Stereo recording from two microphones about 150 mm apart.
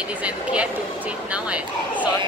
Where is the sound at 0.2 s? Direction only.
10° right (ahead or behind).